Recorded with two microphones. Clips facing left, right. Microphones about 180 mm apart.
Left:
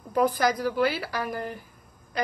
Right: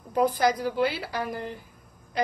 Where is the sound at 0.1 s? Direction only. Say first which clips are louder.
Even; 20° right (ahead or behind).